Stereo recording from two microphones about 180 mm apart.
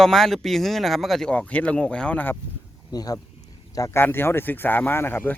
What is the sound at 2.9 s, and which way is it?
A man's voice, 20° left (ahead or behind).